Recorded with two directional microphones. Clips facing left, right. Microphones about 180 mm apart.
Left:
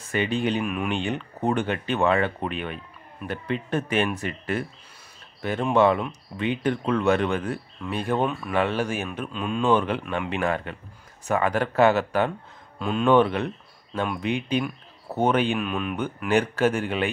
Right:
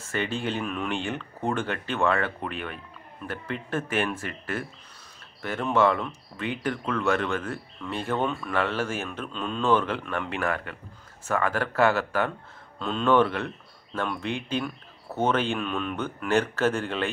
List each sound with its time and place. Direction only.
0.0 s speech: 15° left (ahead or behind)